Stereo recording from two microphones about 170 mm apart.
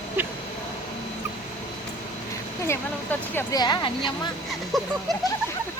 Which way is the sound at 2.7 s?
15° left (ahead or behind).